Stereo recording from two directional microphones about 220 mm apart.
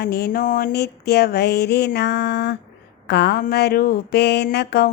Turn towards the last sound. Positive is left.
turn(degrees=50)  # may be behind; listen again after turning